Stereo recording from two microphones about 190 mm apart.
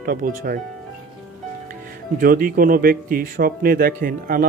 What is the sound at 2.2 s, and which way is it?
Speech, 50° right (ahead or behind).